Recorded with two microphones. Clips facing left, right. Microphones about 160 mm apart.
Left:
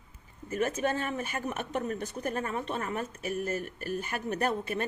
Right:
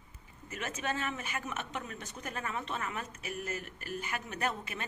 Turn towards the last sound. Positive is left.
turn(degrees=40)  # may be behind; listen again after turning